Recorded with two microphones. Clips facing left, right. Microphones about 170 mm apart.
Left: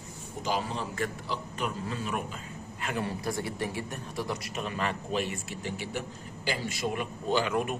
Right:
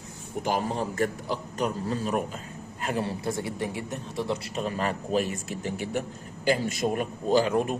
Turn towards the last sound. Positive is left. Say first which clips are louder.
# right 5 dB
turn(degrees=-35)  # may be behind; listen again after turning